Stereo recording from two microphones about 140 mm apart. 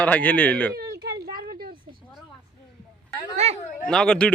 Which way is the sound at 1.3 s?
90° right.